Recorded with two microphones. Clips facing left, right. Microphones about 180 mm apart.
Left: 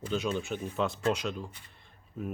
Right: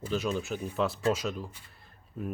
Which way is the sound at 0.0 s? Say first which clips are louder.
Right 1 dB; centre (ahead or behind).